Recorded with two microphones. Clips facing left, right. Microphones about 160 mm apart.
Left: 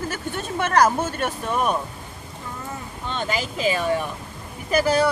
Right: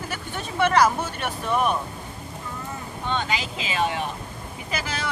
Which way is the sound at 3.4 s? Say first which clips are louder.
Left 3 dB; 45° left (ahead or behind).